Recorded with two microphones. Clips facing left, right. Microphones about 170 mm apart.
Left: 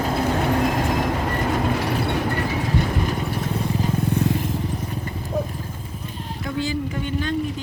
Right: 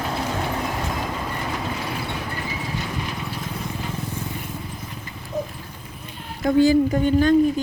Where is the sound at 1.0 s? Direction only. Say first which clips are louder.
Left 5 dB; 70° left (ahead or behind).